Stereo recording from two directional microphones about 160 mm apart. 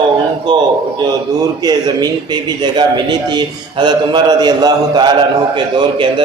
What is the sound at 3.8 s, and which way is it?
A man's voice, 25° right (ahead or behind).